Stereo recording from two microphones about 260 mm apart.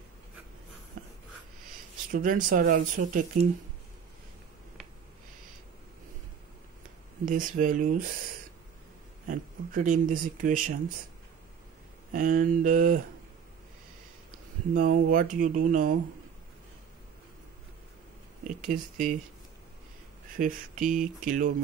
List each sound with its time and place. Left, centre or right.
2.0 s speech: right
7.2 s speech: right
9.3 s speech: right
12.1 s speech: right
14.7 s speech: right
18.7 s speech: right
20.3 s speech: right